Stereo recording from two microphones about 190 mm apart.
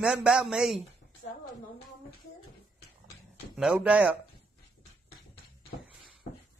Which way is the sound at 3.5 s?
5° right (ahead or behind).